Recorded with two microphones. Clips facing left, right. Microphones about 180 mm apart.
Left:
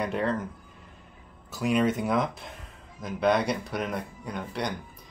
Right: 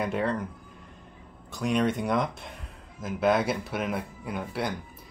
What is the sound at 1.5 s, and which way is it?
Speech, 5° left (ahead or behind).